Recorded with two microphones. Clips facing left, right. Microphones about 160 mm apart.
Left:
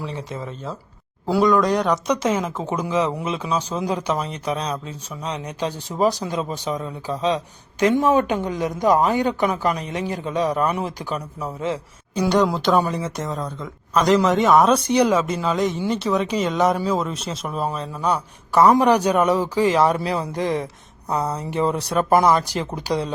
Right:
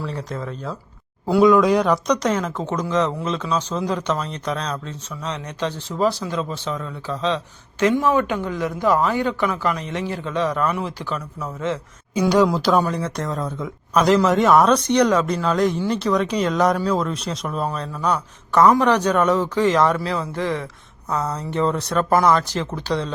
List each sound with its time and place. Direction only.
0.0 s speech: 5° left (ahead or behind)
12.2 s speech: centre (ahead or behind)